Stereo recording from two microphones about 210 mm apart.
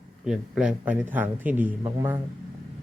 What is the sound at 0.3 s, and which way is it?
Speech, 5° right (ahead or behind).